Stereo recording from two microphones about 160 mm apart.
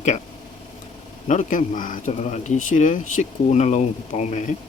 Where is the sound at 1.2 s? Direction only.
50° left (ahead or behind).